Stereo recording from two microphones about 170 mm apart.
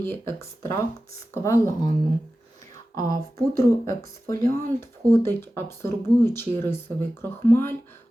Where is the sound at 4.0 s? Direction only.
15° left (ahead or behind).